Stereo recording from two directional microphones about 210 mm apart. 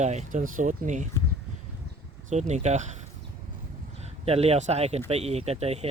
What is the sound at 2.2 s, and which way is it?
Speech, 35° right (ahead or behind).